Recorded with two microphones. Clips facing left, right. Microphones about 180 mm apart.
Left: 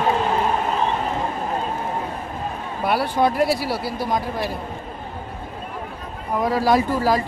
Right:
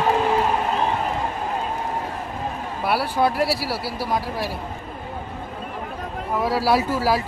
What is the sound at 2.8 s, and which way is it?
Speech, 5° right (ahead or behind).